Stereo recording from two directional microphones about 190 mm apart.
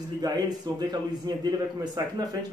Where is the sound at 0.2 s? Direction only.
20° right (ahead or behind).